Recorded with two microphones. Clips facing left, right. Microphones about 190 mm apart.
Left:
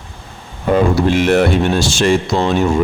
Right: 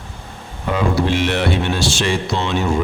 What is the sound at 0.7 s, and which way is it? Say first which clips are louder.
Speech: left 5 dB; 45° left (ahead or behind).